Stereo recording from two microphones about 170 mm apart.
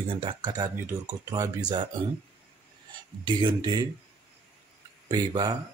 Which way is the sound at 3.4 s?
30° right (ahead or behind).